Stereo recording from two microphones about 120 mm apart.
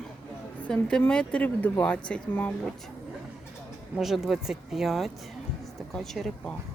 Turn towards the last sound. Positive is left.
turn(degrees=0)  # may be behind; listen again after turning